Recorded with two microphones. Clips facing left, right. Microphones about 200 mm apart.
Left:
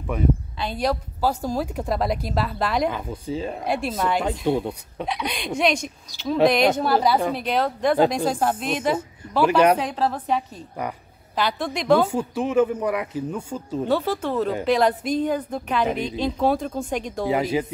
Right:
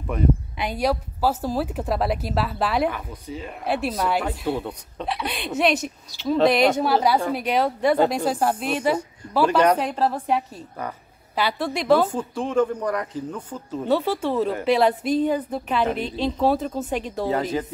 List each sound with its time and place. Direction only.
0.6 s a woman's voice: 10° right (ahead or behind)
2.9 s speech: 30° left (ahead or behind)
3.6 s a woman's voice: 5° right (ahead or behind)
4.5 s speech: 15° left (ahead or behind)
5.0 s a woman's voice: 5° right (ahead or behind)
9.5 s speech: 10° left (ahead or behind)
9.8 s a woman's voice: 5° right (ahead or behind)
12.1 s speech: 10° left (ahead or behind)
13.8 s a woman's voice: 5° right (ahead or behind)
17.3 s speech: 10° left (ahead or behind)